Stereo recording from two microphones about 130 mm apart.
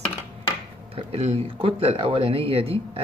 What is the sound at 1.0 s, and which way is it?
Speech, 50° right (ahead or behind).